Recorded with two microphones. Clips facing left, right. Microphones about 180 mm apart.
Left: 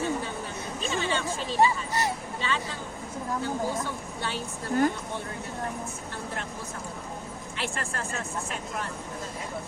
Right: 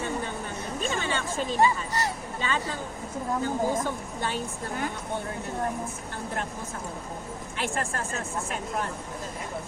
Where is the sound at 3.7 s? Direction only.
45° right (ahead or behind).